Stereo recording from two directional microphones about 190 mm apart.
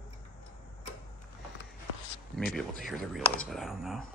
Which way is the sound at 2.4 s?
5° left (ahead or behind).